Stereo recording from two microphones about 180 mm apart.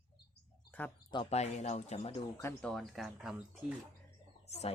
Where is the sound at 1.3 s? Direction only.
40° left (ahead or behind).